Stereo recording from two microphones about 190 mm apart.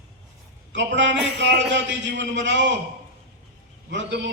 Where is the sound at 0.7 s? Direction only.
75° right (ahead or behind).